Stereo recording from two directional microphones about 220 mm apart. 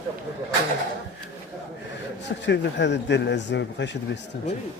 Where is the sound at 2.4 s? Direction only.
50° left (ahead or behind).